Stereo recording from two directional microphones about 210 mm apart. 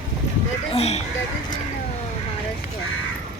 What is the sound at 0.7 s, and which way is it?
Speech, 30° left (ahead or behind).